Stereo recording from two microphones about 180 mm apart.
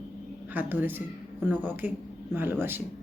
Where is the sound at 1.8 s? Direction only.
40° left (ahead or behind).